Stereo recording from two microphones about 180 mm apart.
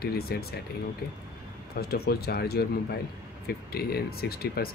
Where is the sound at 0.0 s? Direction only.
60° left (ahead or behind).